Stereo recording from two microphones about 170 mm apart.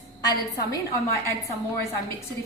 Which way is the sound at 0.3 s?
20° left (ahead or behind).